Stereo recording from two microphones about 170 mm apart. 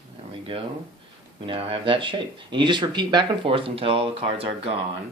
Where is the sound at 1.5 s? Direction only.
35° right (ahead or behind).